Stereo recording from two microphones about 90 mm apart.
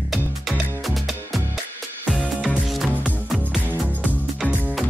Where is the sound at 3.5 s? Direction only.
20° right (ahead or behind).